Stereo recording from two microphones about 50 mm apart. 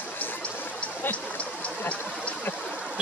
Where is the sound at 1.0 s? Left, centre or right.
Left.